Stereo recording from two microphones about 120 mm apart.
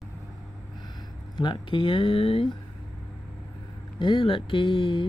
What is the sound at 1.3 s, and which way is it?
Speech, 40° left (ahead or behind).